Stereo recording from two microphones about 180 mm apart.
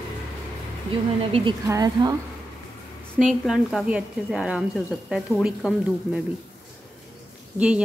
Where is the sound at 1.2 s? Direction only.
30° right (ahead or behind).